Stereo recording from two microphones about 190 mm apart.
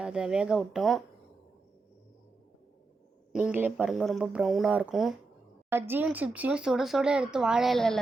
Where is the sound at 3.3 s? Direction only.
5° right (ahead or behind).